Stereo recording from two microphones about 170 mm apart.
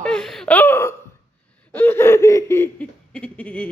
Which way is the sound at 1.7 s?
15° left (ahead or behind).